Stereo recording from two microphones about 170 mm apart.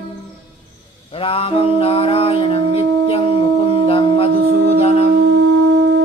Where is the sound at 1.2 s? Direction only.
35° left (ahead or behind).